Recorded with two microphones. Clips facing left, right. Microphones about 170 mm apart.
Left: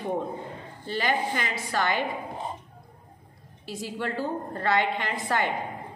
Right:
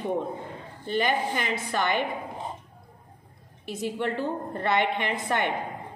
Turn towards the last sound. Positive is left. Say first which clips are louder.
# even
turn(degrees=-20)  # may be behind; listen again after turning